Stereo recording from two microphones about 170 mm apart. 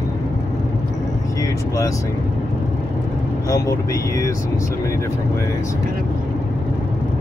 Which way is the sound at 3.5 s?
20° left (ahead or behind).